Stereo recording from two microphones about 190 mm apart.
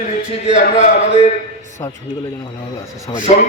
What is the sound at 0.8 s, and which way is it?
Speech, 40° left (ahead or behind).